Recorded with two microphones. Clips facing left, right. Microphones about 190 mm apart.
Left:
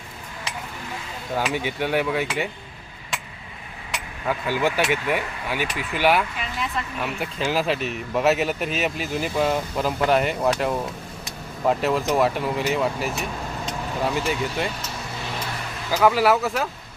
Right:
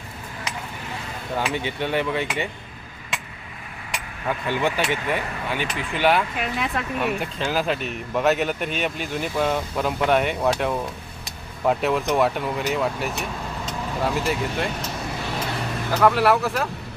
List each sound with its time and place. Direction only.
1.4 s speech: 10° left (ahead or behind)
4.3 s speech: 5° left (ahead or behind)
6.4 s speech: 60° right (ahead or behind)
7.0 s speech: centre (ahead or behind)
15.9 s speech: 5° left (ahead or behind)